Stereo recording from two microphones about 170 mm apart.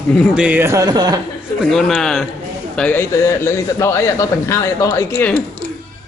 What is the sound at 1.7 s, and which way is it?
A man's voice, centre (ahead or behind).